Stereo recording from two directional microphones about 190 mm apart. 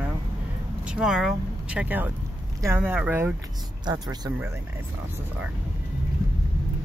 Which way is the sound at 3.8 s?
20° right (ahead or behind).